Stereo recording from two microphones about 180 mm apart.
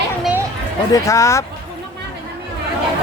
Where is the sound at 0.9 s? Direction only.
15° left (ahead or behind).